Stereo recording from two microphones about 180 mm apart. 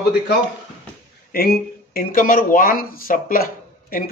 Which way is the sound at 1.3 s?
55° left (ahead or behind).